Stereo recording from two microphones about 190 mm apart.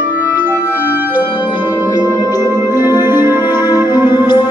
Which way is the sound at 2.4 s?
15° right (ahead or behind).